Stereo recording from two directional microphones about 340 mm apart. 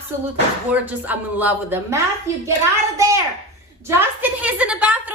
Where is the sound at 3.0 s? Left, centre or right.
Centre.